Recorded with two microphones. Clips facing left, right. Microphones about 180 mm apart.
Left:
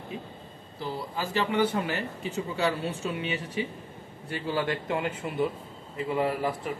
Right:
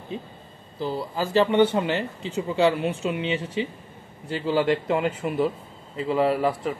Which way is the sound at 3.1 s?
25° right (ahead or behind).